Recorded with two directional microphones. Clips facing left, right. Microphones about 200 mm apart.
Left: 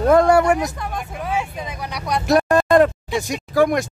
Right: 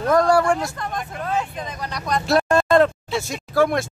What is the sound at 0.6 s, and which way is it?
Speech, 10° left (ahead or behind).